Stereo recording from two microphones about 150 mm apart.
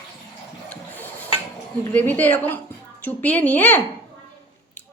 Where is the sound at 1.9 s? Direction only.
10° left (ahead or behind).